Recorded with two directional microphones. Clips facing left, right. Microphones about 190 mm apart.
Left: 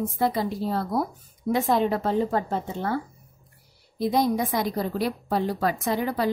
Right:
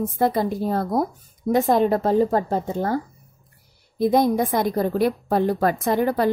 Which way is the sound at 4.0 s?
50° right (ahead or behind).